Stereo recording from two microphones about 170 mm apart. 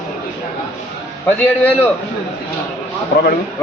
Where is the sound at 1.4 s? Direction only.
10° left (ahead or behind).